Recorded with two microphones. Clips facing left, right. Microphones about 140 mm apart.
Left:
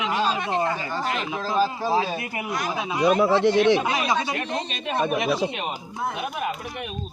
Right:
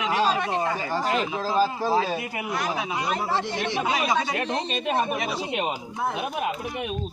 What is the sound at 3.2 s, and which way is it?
Speech, 70° left (ahead or behind).